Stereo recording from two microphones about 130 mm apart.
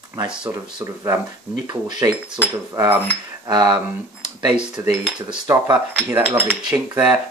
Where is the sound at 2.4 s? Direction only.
15° right (ahead or behind).